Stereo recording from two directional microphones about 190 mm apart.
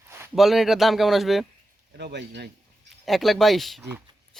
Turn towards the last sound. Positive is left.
turn(degrees=0)  # may be behind; listen again after turning